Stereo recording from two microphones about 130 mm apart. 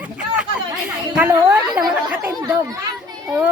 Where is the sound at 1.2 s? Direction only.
15° right (ahead or behind).